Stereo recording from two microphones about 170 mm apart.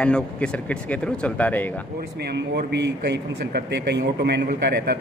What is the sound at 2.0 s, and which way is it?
A man's voice, 75° right (ahead or behind).